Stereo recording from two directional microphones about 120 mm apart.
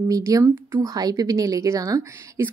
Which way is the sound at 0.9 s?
30° right (ahead or behind).